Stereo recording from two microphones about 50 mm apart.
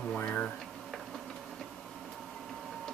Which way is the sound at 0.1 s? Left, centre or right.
Left.